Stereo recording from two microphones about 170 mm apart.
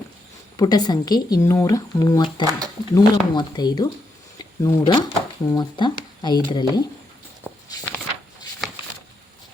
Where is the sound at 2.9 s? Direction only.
25° left (ahead or behind).